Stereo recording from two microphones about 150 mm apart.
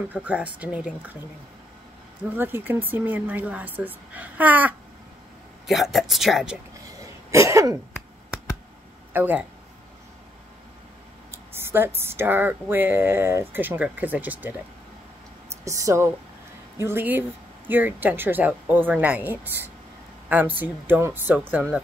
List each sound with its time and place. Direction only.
0.1 s speech: 10° right (ahead or behind)
2.3 s speech: 15° right (ahead or behind)
7.2 s cough: 20° right (ahead or behind)
9.1 s speech: 10° right (ahead or behind)
11.3 s speech: 15° right (ahead or behind)
15.6 s cough: 20° right (ahead or behind)
16.8 s speech: 15° right (ahead or behind)